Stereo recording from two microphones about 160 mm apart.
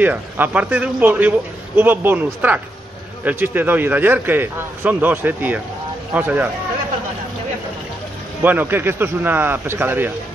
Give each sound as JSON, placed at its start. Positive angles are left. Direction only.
{"t": 0.0, "sound": "a man's voice", "side_deg": -10}
{"t": 8.4, "sound": "a man's voice", "side_deg": -10}